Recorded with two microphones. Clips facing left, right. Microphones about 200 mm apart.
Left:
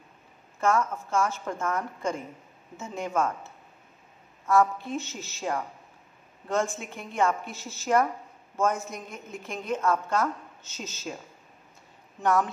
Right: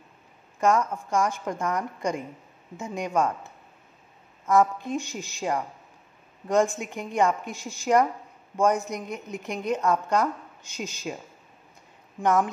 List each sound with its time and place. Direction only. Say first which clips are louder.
0.6 s a woman's voice: right 2 dB; 15° right (ahead or behind)
12.2 s a woman's voice: right 2 dB; 15° right (ahead or behind)